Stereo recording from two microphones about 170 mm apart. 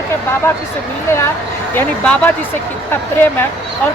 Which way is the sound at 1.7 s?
10° left (ahead or behind).